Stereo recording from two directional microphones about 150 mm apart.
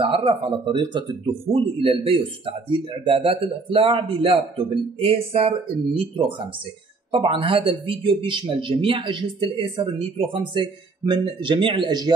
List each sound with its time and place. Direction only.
0.0 s speech: 35° right (ahead or behind)
7.1 s speech: 35° right (ahead or behind)